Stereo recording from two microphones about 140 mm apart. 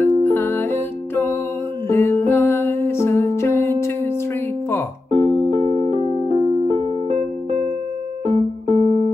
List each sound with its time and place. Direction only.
0.0 s music: 15° left (ahead or behind)
5.1 s keyboard: 40° right (ahead or behind)
8.3 s keyboard: 45° right (ahead or behind)